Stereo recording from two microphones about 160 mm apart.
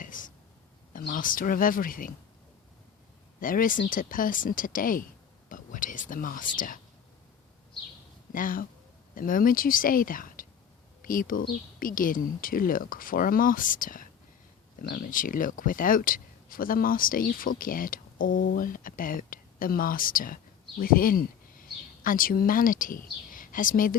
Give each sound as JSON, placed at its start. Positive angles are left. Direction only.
{"t": 0.0, "sound": "a sound", "side_deg": 55}
{"t": 0.9, "sound": "speech", "side_deg": 60}
{"t": 3.4, "sound": "speech", "side_deg": 60}
{"t": 8.3, "sound": "speech", "side_deg": 60}